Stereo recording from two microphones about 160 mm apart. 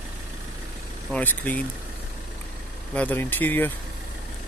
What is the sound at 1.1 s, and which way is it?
Speech, 10° left (ahead or behind).